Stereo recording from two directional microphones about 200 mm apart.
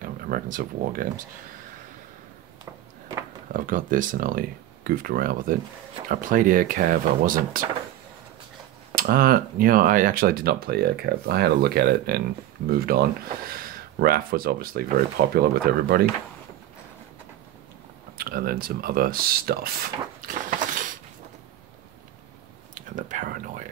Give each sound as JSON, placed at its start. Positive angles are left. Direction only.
{"t": 0.0, "sound": "speech", "side_deg": -45}
{"t": 3.5, "sound": "speech", "side_deg": -40}
{"t": 8.9, "sound": "speech", "side_deg": -45}
{"t": 18.1, "sound": "speech", "side_deg": -45}
{"t": 22.8, "sound": "a sound", "side_deg": -40}